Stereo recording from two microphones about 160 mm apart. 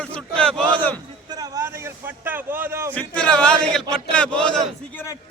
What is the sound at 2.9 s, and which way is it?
A man's voice, 5° left (ahead or behind).